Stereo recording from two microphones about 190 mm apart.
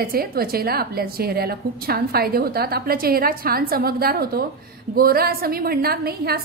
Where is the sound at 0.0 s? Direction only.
50° right (ahead or behind).